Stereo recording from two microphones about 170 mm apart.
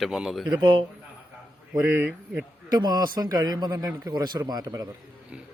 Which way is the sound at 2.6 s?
25° right (ahead or behind).